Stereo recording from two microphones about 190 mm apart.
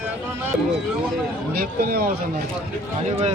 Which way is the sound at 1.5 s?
50° right (ahead or behind).